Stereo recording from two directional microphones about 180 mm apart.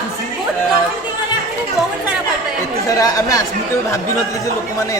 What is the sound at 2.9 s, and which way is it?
Speech, 20° left (ahead or behind).